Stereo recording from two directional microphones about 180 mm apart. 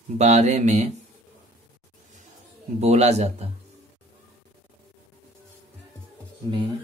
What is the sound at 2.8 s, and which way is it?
Speech, 35° right (ahead or behind).